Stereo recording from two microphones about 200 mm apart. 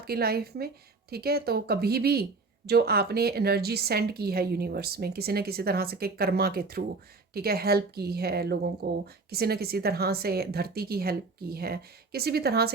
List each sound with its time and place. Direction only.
0.0 s a woman's voice: 50° right (ahead or behind)